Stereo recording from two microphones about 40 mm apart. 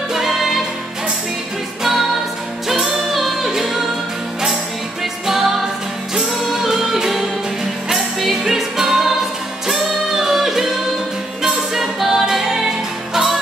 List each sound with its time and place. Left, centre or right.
0.1 s music: centre
1.8 s music: centre
5.2 s music: centre